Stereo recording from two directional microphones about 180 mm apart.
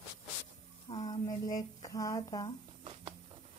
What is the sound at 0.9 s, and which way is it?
Speech, 25° left (ahead or behind).